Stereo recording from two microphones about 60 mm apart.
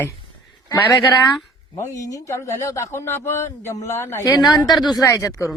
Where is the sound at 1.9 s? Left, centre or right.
Left.